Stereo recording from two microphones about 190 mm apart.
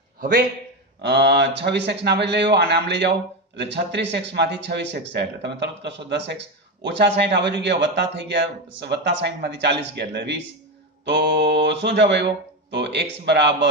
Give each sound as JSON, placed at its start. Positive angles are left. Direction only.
{"t": 1.0, "sound": "a man's voice", "side_deg": -65}